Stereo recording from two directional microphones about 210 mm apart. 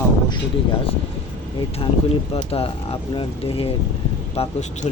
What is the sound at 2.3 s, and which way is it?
Speech, 30° left (ahead or behind).